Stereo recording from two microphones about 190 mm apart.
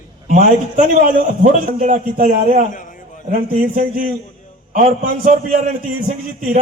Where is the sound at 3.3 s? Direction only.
50° right (ahead or behind).